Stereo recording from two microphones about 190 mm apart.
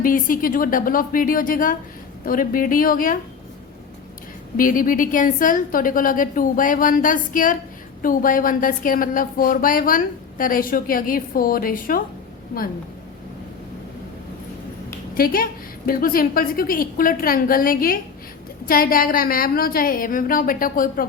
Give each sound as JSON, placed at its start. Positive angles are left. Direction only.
{"t": 0.0, "sound": "speech", "side_deg": 45}
{"t": 4.5, "sound": "speech", "side_deg": 45}
{"t": 15.1, "sound": "a woman's voice", "side_deg": 50}